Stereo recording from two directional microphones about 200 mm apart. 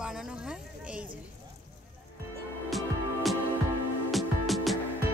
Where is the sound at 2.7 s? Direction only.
Centre (ahead or behind).